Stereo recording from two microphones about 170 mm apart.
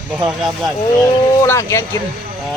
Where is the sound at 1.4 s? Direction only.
15° left (ahead or behind).